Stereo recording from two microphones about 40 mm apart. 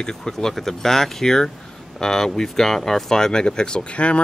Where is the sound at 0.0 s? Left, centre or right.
Centre.